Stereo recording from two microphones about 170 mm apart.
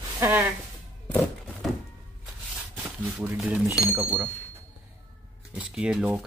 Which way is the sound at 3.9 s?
10° right (ahead or behind).